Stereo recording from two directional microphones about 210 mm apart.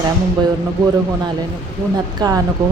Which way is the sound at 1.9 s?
20° right (ahead or behind).